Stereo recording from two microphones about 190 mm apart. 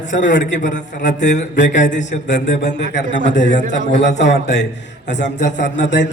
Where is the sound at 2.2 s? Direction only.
65° left (ahead or behind).